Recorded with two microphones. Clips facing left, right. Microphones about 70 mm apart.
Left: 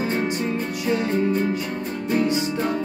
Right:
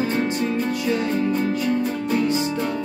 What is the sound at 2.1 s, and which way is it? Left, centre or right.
Music, left.